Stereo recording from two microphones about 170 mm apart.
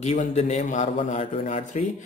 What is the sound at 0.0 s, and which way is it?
A man's voice, 40° left (ahead or behind).